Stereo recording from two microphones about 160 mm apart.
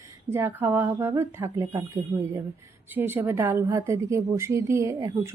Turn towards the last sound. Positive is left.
turn(degrees=-20)  # may be behind; listen again after turning